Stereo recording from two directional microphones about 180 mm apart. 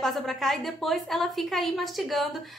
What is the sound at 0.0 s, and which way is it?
A woman's voice, centre (ahead or behind).